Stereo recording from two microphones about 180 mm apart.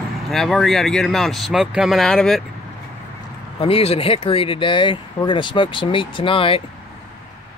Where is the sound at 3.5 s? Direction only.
35° left (ahead or behind).